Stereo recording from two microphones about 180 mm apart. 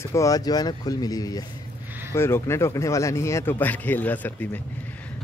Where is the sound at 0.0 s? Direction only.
15° left (ahead or behind).